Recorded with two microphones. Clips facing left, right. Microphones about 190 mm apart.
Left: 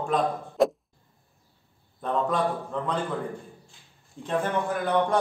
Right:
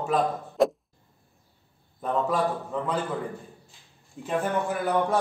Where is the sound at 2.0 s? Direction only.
5° right (ahead or behind).